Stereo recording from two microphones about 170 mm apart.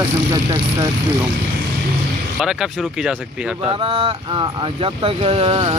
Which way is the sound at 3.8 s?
30° right (ahead or behind).